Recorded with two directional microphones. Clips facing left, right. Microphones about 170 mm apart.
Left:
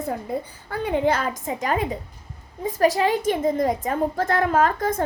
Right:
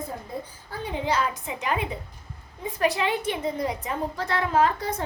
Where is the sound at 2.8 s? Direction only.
40° left (ahead or behind).